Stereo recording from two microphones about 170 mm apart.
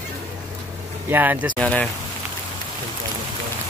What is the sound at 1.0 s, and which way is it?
Speech, 10° right (ahead or behind).